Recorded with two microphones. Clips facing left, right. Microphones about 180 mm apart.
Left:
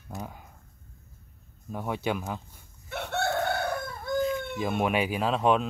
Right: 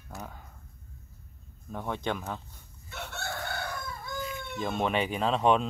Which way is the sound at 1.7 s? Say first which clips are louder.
Left 3 dB; 10° left (ahead or behind).